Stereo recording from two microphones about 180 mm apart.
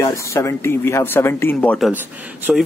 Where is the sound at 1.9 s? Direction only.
10° right (ahead or behind).